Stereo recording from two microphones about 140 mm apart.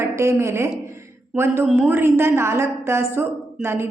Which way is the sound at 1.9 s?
15° right (ahead or behind).